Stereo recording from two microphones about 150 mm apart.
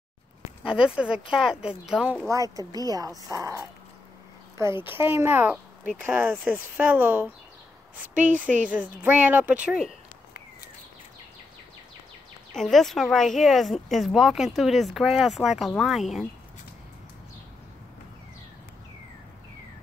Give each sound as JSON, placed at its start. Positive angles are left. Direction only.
{"t": 0.7, "sound": "speech", "side_deg": -5}
{"t": 2.2, "sound": "speech", "side_deg": -20}
{"t": 8.1, "sound": "a woman's voice", "side_deg": -60}
{"t": 9.0, "sound": "speech", "side_deg": -10}
{"t": 12.5, "sound": "speech", "side_deg": 0}